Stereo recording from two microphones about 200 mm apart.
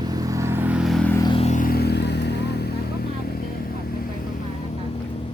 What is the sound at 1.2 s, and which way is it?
Vehicle, 30° left (ahead or behind).